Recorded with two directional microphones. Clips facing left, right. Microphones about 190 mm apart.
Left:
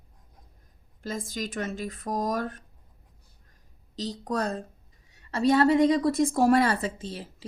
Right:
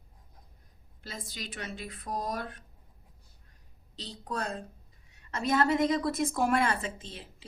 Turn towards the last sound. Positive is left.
turn(degrees=40)  # may be behind; listen again after turning